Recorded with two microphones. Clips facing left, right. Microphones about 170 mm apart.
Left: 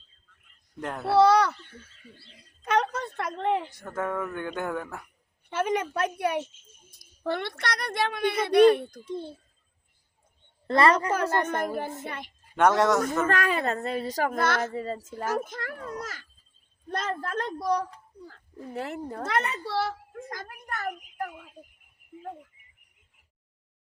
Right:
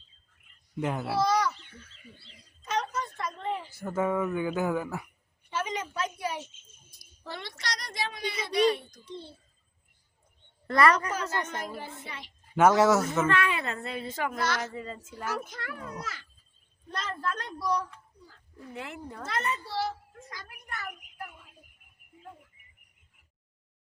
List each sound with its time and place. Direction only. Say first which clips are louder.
0.8 s speech: right 1 dB; 5° right (ahead or behind)
1.1 s a sound: left 8 dB; 65° left (ahead or behind)
2.6 s a sound: left 5 dB; 60° left (ahead or behind)
3.7 s speech: right 3 dB; 5° right (ahead or behind)
5.5 s speech: left 6 dB; 55° left (ahead or behind)
10.7 s a woman's voice: left 2 dB; 30° left (ahead or behind)
11.1 s a woman's voice: left 7 dB; 55° left (ahead or behind)
12.5 s speech: even; 5° right (ahead or behind)
13.2 s a woman's voice: left 2 dB; 40° left (ahead or behind)
14.4 s a woman's voice: left 4 dB; 55° left (ahead or behind)
14.7 s a woman's voice: left 7 dB; 40° left (ahead or behind)
16.9 s speech: left 4 dB; 50° left (ahead or behind)
19.2 s a child's voice: left 3 dB; 65° left (ahead or behind)